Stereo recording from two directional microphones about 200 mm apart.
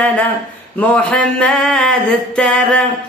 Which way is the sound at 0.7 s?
5° left (ahead or behind).